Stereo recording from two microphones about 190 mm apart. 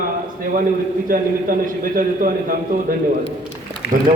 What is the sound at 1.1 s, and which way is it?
A man's voice, 50° right (ahead or behind).